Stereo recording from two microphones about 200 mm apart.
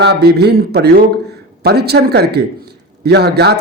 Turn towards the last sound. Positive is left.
turn(degrees=-55)  # may be behind; listen again after turning